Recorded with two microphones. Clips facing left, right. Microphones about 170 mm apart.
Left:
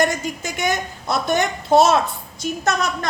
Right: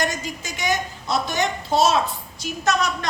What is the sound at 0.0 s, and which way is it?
A woman's voice, 55° left (ahead or behind).